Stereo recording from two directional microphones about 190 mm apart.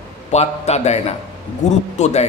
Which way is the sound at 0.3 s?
35° left (ahead or behind).